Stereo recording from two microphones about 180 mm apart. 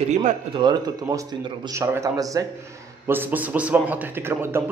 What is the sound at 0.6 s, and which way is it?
A man's voice, 25° right (ahead or behind).